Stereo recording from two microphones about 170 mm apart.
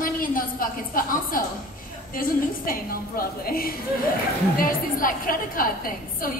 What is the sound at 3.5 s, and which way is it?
A woman's voice, 60° left (ahead or behind).